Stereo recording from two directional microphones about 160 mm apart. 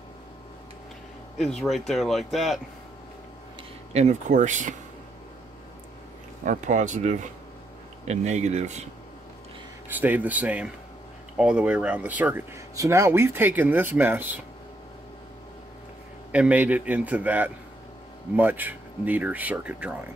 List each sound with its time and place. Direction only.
1.4 s speech: centre (ahead or behind)
3.9 s speech: 45° right (ahead or behind)
6.4 s speech: 50° right (ahead or behind)
9.8 s speech: 10° right (ahead or behind)
16.3 s speech: 10° right (ahead or behind)